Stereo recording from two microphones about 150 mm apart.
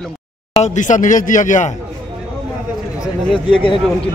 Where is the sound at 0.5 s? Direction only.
50° left (ahead or behind).